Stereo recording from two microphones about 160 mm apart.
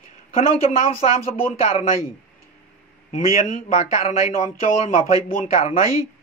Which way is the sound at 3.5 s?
45° left (ahead or behind).